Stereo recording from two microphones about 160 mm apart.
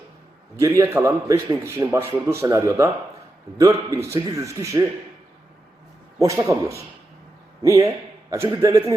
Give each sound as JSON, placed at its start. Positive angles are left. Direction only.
{"t": 0.8, "sound": "a man's voice", "side_deg": -15}
{"t": 6.1, "sound": "a man's voice", "side_deg": -20}